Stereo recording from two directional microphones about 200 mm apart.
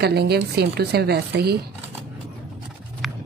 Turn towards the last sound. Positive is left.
turn(degrees=0)  # may be behind; listen again after turning